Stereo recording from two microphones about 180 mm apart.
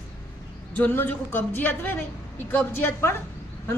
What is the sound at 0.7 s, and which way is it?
A woman's voice, 10° left (ahead or behind).